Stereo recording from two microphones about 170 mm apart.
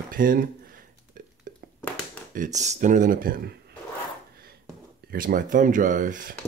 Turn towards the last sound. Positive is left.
turn(degrees=-50)  # may be behind; listen again after turning